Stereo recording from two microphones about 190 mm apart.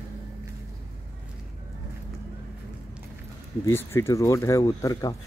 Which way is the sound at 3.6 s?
15° left (ahead or behind).